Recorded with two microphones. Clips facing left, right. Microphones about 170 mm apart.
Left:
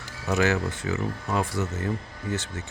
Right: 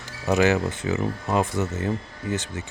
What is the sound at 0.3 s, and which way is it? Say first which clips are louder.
Speech: right 4 dB; 20° right (ahead or behind).